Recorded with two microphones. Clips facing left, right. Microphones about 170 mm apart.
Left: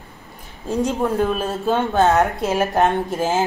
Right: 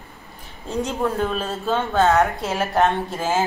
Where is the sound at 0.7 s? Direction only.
15° left (ahead or behind).